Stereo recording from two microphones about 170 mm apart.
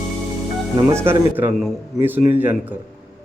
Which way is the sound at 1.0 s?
15° right (ahead or behind).